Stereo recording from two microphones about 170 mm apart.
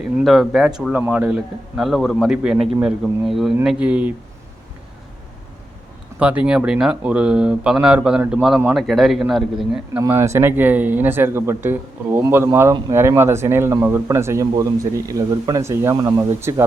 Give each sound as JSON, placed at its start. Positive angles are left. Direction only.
{"t": 0.2, "sound": "a man's voice", "side_deg": 0}
{"t": 6.1, "sound": "a man's voice", "side_deg": -5}
{"t": 10.0, "sound": "speech", "side_deg": -15}